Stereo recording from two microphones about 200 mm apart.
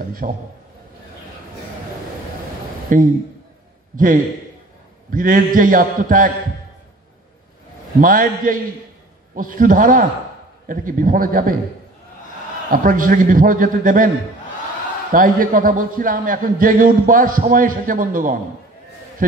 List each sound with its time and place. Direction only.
0.2 s a man's voice: 45° right (ahead or behind)
2.9 s a man's voice: 40° right (ahead or behind)
8.0 s a man's voice: 45° right (ahead or behind)
12.6 s a man's voice: 45° right (ahead or behind)
15.1 s a man's voice: 45° right (ahead or behind)